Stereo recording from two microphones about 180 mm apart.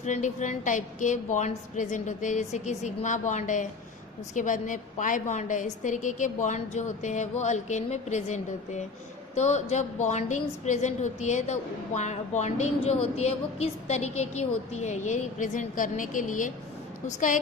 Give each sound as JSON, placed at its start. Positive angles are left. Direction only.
{"t": 0.0, "sound": "a woman's voice", "side_deg": 40}